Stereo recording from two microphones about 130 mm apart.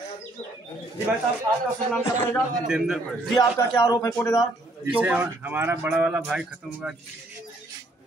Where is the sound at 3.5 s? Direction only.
25° left (ahead or behind).